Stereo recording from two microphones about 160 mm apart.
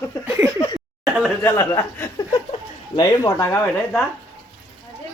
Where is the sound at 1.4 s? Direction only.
15° left (ahead or behind).